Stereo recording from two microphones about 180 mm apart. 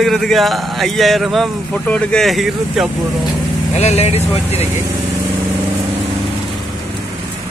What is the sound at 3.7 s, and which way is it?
Speech, 40° left (ahead or behind).